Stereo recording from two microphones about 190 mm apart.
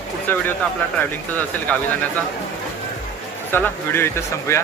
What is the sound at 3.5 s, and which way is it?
Speech, 10° left (ahead or behind).